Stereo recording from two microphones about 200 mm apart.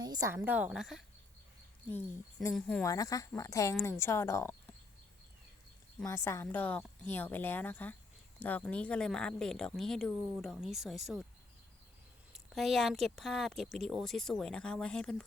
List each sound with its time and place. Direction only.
0.0 s a woman's voice: 20° right (ahead or behind); by 1.0 s centre (ahead or behind)
2.6 s speech: 5° left (ahead or behind)
2.8 s speech: 15° left (ahead or behind)
6.1 s speech: 15° left (ahead or behind); by 11.3 s centre (ahead or behind)
12.3 s speech: centre (ahead or behind)